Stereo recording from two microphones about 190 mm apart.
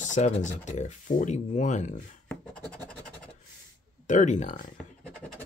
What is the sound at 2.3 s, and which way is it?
Scratch, 5° left (ahead or behind).